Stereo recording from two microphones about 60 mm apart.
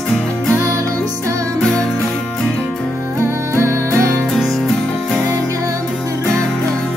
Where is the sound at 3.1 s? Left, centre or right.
Right.